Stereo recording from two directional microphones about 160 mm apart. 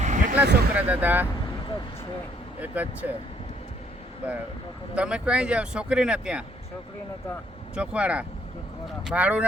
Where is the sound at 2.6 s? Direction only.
10° right (ahead or behind).